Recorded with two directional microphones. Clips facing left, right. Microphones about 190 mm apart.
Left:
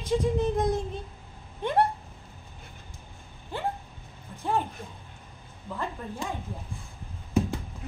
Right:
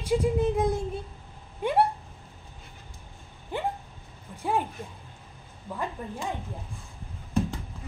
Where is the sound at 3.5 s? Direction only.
15° right (ahead or behind).